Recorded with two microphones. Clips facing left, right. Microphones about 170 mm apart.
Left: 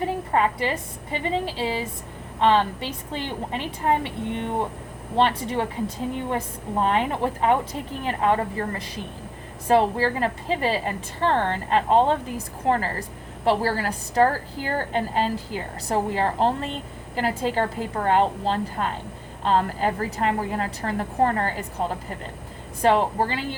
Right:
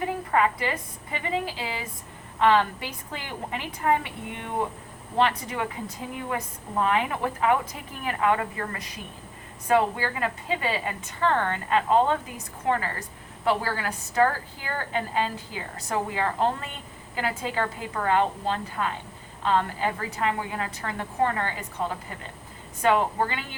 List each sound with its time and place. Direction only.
0.0 s a woman's voice: 30° left (ahead or behind)
5.1 s a woman's voice: 30° left (ahead or behind)